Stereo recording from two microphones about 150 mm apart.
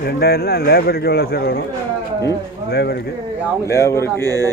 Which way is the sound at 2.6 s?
90° left.